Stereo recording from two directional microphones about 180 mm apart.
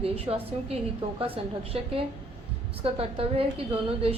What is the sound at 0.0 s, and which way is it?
A woman's voice, 35° right (ahead or behind).